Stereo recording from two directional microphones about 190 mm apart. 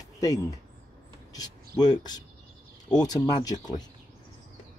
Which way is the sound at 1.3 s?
20° left (ahead or behind).